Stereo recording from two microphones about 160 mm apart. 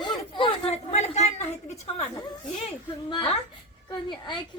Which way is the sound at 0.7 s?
45° left (ahead or behind).